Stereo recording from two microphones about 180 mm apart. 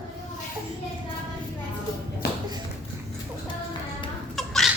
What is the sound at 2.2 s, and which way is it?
Tap, 60° left (ahead or behind).